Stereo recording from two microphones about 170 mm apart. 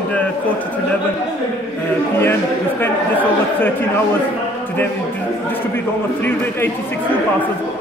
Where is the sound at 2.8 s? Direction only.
10° left (ahead or behind).